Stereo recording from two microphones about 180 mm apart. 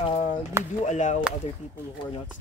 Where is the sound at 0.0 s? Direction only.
30° left (ahead or behind).